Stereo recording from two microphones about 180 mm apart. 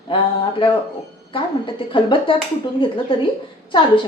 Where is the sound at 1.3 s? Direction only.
30° left (ahead or behind).